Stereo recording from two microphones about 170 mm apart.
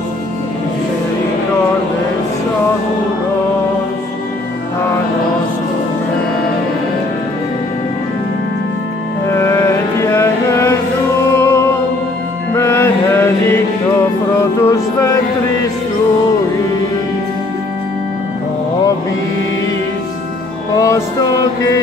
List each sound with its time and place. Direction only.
9.3 s music: 15° left (ahead or behind)
12.5 s mantra: 15° left (ahead or behind)
14.4 s music: 20° left (ahead or behind)
20.7 s music: 20° left (ahead or behind)